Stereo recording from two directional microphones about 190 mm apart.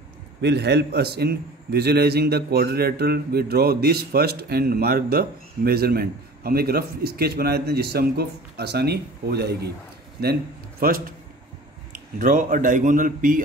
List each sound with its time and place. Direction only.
0.4 s a man's voice: 60° right (ahead or behind)
10.8 s a man's voice: 50° right (ahead or behind)
12.2 s a man's voice: 45° right (ahead or behind)